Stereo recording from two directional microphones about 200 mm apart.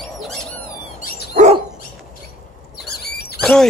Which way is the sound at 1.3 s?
35° right (ahead or behind).